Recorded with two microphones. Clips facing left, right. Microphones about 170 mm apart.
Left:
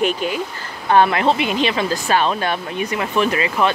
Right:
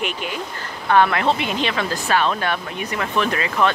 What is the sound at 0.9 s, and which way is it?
Speech, 25° left (ahead or behind).